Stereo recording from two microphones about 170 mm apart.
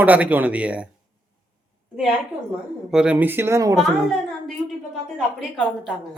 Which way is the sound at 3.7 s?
Centre (ahead or behind).